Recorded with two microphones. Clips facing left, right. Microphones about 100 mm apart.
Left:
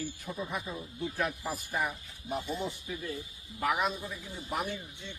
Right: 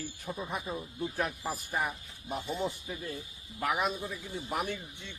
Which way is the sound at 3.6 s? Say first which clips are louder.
Left 1 dB; 45° right (ahead or behind).